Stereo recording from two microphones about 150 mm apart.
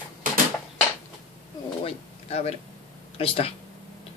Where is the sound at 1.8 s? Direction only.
40° left (ahead or behind).